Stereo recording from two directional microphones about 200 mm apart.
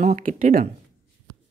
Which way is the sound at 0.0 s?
40° right (ahead or behind).